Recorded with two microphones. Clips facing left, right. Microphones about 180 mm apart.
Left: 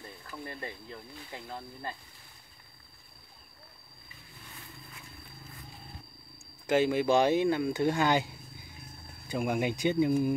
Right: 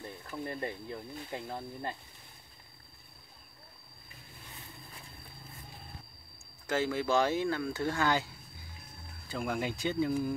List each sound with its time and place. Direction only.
0.3 s speech: 20° right (ahead or behind)
6.7 s speech: 20° left (ahead or behind)
9.3 s speech: 15° left (ahead or behind)